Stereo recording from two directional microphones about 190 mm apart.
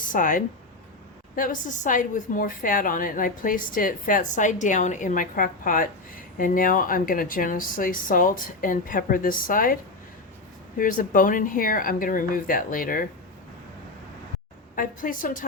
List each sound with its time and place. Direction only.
0.0 s a woman's voice: 45° left (ahead or behind)
10.8 s a woman's voice: 45° left (ahead or behind)
14.8 s a woman's voice: 45° left (ahead or behind)